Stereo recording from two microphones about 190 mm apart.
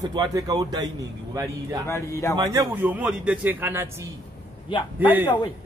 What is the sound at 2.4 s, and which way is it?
A man's voice, 20° right (ahead or behind).